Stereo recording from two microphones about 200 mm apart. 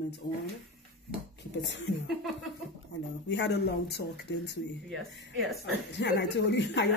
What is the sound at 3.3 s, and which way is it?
A woman's voice, 60° left (ahead or behind).